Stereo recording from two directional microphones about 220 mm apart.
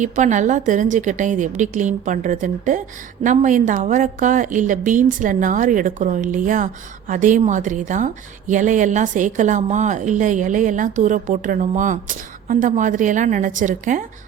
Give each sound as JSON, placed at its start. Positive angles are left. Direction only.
{"t": 0.0, "sound": "a woman's voice", "side_deg": -35}